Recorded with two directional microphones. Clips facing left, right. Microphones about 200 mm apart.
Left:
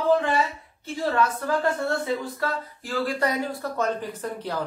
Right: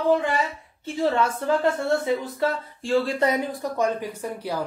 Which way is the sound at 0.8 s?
25° right (ahead or behind).